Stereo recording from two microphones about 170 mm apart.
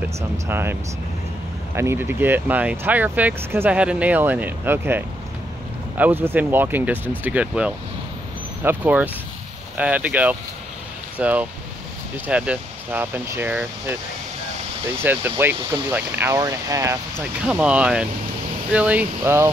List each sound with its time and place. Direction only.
0.5 s speech: 15° right (ahead or behind)
1.8 s speech: 15° right (ahead or behind)
15.0 s speech: 10° right (ahead or behind)